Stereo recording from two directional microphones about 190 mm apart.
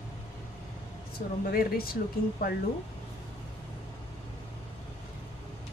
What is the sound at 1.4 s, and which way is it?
Speech, 50° left (ahead or behind).